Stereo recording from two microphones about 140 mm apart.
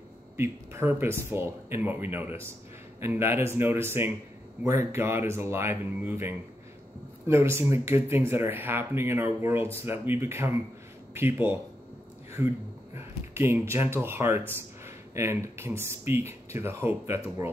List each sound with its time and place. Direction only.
0.4 s speech: 15° right (ahead or behind)